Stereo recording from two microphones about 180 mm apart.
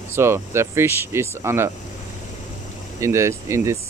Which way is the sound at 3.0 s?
15° right (ahead or behind).